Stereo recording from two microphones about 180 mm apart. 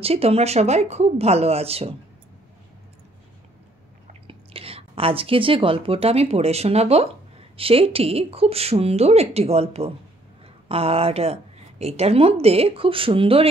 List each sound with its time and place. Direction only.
0.0 s speech: 35° right (ahead or behind)
4.1 s speech: 30° right (ahead or behind)